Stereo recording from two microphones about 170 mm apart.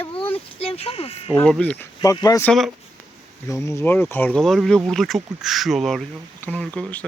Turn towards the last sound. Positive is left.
turn(degrees=5)  # may be behind; listen again after turning